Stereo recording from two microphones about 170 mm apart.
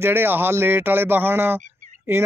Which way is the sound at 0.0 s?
10° right (ahead or behind).